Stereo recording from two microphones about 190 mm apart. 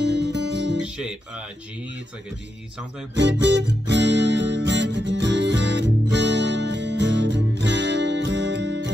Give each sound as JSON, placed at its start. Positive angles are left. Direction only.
{"t": 0.0, "sound": "music", "side_deg": -65}
{"t": 0.8, "sound": "music", "side_deg": -5}
{"t": 3.2, "sound": "music", "side_deg": -65}